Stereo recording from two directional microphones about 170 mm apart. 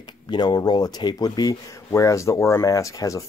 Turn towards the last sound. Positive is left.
turn(degrees=20)  # may be behind; listen again after turning